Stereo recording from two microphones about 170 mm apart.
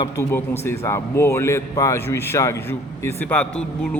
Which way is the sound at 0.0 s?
15° left (ahead or behind).